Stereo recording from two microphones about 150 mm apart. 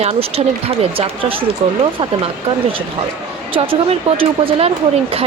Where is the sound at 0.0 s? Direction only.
40° right (ahead or behind).